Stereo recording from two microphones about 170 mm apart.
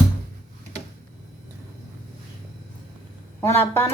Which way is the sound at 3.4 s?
15° left (ahead or behind).